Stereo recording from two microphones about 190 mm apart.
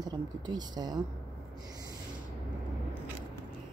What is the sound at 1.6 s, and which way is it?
Snort, 20° right (ahead or behind).